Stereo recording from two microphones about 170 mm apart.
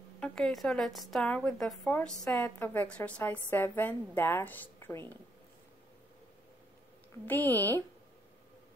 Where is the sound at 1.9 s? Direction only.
10° left (ahead or behind).